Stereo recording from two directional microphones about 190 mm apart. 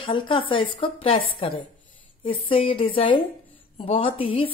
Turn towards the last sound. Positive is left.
turn(degrees=30)  # may be behind; listen again after turning